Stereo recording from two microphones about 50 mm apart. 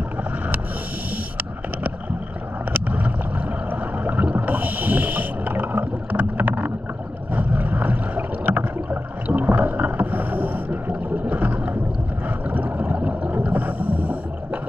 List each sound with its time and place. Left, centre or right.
4.0 s boat: right
4.4 s snort: right
7.3 s boat: right
12.4 s a sound: right